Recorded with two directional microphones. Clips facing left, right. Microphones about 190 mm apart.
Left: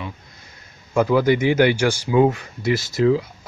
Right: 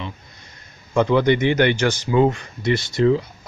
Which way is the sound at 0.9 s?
5° left (ahead or behind).